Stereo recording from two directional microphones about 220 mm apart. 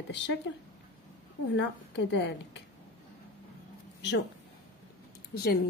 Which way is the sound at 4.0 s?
50° left (ahead or behind).